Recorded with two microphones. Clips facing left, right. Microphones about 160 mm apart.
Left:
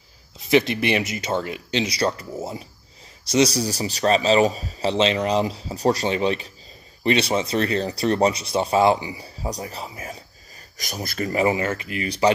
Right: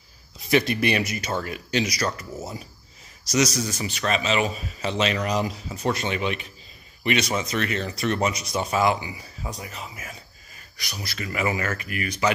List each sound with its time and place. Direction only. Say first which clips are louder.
0.5 s speech: left 2 dB; 20° left (ahead or behind)
10.8 s speech: left 7 dB; 45° left (ahead or behind)
11.4 s speech: left 2 dB; 25° left (ahead or behind)